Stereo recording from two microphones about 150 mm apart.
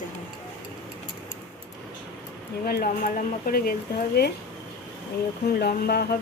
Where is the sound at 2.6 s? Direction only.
80° left.